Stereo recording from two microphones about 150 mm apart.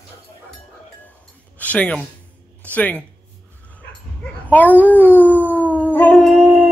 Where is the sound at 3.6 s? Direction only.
10° left (ahead or behind).